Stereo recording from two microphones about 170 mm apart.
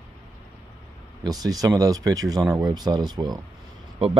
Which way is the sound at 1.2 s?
20° right (ahead or behind).